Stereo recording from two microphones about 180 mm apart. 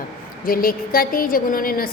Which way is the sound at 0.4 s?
55° left (ahead or behind).